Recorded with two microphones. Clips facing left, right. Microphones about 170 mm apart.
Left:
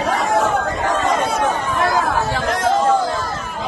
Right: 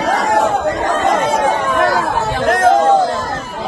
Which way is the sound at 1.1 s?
90° right.